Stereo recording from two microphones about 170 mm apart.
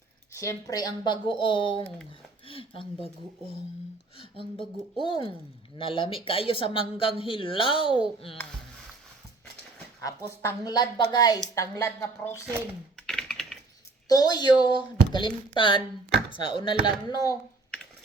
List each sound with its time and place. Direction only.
0.3 s speech: 20° left (ahead or behind)
4.9 s a man's voice: 30° left (ahead or behind)
10.0 s speech: 15° left (ahead or behind)
13.1 s typing: 5° left (ahead or behind)
14.1 s speech: 25° left (ahead or behind)